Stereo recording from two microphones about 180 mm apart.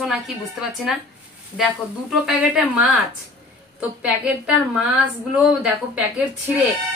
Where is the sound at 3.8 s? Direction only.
10° right (ahead or behind).